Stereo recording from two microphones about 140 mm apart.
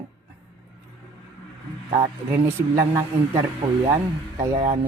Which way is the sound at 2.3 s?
20° right (ahead or behind).